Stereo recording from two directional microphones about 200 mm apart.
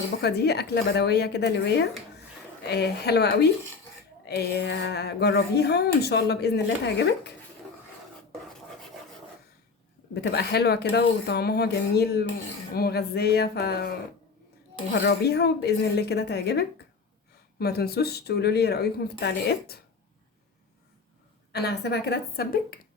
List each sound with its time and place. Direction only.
0.2 s speech: 55° left (ahead or behind)
10.2 s speech: 55° left (ahead or behind)
15.0 s speech: 55° left (ahead or behind)
21.5 s speech: 55° left (ahead or behind)